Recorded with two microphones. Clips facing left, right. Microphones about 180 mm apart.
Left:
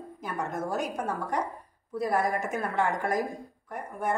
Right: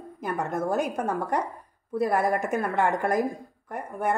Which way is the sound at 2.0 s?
55° right (ahead or behind).